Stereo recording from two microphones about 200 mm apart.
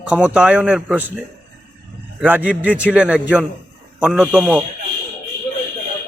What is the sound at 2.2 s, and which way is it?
A man's voice, 10° right (ahead or behind).